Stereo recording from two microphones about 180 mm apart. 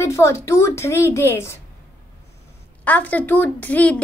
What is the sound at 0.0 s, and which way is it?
A woman's voice, 15° left (ahead or behind).